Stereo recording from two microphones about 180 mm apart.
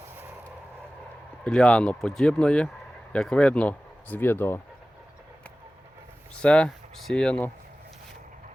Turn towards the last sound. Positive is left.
turn(degrees=5)  # may be behind; listen again after turning